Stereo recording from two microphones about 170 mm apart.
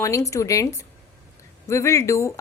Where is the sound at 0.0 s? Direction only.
20° left (ahead or behind).